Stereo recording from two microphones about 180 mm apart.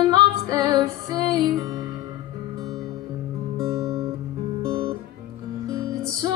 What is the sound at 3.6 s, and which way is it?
Guitar, 20° right (ahead or behind).